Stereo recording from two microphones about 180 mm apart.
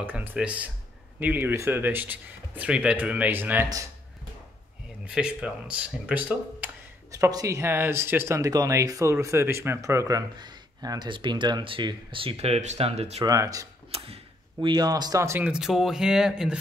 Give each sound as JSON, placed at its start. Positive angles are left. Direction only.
{"t": 0.0, "sound": "speech", "side_deg": -10}
{"t": 5.0, "sound": "speech", "side_deg": -5}
{"t": 13.2, "sound": "speech", "side_deg": -20}
{"t": 13.9, "sound": "speech", "side_deg": -30}